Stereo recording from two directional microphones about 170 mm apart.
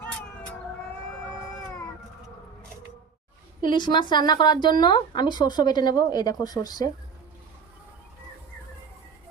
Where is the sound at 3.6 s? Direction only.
25° left (ahead or behind).